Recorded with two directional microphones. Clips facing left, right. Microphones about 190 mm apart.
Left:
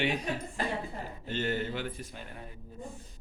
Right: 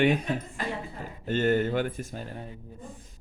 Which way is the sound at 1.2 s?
50° right (ahead or behind).